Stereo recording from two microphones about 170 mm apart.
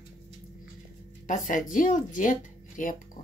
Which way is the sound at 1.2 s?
50° left (ahead or behind).